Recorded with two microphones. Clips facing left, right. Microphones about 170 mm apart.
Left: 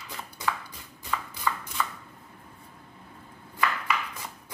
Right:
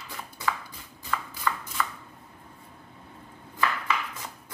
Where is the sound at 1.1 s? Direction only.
Centre (ahead or behind).